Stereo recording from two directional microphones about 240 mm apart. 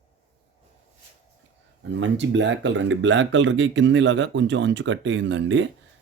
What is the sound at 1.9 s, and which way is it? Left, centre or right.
Speech, right.